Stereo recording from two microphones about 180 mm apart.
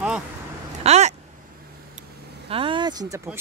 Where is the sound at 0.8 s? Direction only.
40° right (ahead or behind).